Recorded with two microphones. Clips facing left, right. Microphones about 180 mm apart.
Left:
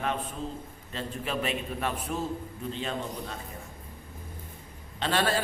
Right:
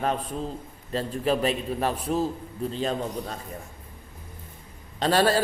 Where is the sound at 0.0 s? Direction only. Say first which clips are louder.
Right 4 dB; 40° right (ahead or behind).